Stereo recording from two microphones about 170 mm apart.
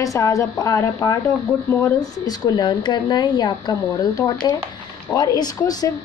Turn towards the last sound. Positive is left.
turn(degrees=25)  # may be behind; listen again after turning